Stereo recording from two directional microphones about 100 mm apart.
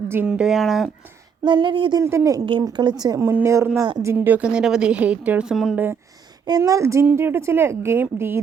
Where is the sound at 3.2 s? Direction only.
25° right (ahead or behind); by 5.7 s 5° right (ahead or behind).